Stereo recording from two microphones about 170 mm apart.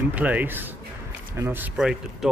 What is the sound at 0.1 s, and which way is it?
Speech, 10° right (ahead or behind).